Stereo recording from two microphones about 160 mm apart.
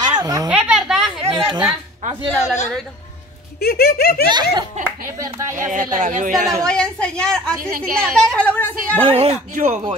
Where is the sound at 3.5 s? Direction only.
75° left (ahead or behind).